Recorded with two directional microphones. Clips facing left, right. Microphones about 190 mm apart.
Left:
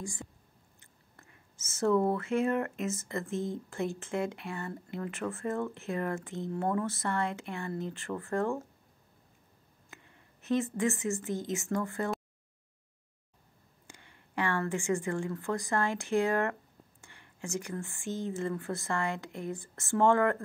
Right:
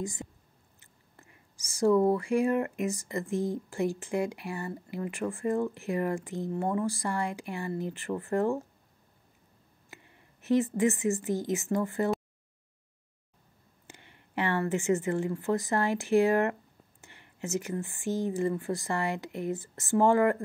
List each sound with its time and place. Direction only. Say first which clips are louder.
0.0 s a woman's voice: right 5 dB; 20° right (ahead or behind)
10.6 s speech: right 4 dB; 20° right (ahead or behind)
14.3 s a woman's voice: right 3 dB; 20° right (ahead or behind)